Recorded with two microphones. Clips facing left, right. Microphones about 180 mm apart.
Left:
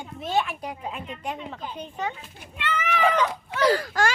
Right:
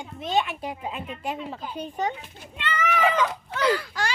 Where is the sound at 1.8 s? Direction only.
40° right (ahead or behind).